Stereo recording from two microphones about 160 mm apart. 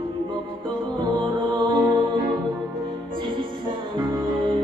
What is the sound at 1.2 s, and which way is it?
Music, 30° right (ahead or behind).